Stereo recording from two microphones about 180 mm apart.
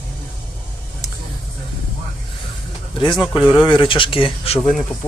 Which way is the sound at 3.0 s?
25° left (ahead or behind).